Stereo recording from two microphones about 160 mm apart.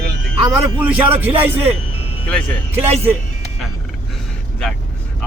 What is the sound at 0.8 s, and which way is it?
Speech, 10° right (ahead or behind).